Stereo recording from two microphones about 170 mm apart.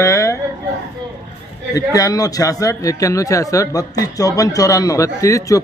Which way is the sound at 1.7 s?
20° left (ahead or behind).